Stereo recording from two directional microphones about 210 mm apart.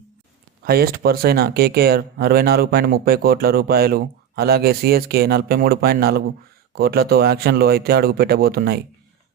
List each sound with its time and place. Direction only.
0.6 s speech: 45° right (ahead or behind)